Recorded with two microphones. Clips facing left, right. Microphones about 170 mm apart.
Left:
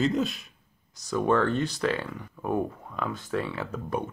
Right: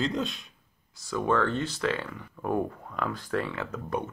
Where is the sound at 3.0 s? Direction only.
20° left (ahead or behind).